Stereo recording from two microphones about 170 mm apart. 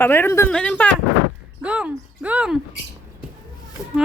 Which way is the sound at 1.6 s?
5° right (ahead or behind).